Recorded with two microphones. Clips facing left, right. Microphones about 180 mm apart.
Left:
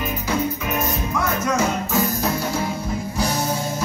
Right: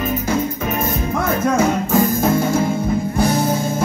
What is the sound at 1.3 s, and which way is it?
Music, 55° right (ahead or behind).